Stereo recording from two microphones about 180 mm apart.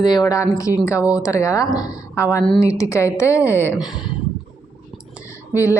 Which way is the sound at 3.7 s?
5° right (ahead or behind).